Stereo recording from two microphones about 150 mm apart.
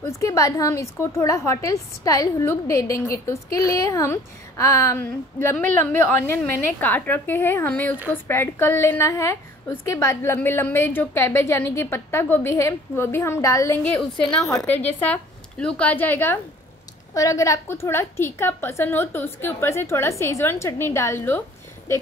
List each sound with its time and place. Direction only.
0.0 s a woman's voice: 20° left (ahead or behind)
13.8 s a woman's voice: 5° left (ahead or behind)